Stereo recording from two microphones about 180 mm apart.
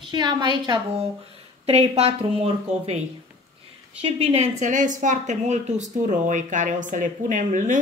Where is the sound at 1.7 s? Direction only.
35° right (ahead or behind).